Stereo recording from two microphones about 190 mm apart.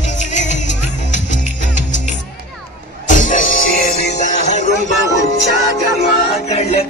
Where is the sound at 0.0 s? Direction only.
40° left (ahead or behind).